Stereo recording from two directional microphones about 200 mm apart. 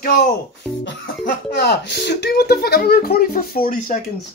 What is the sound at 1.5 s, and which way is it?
Speech, 55° left (ahead or behind).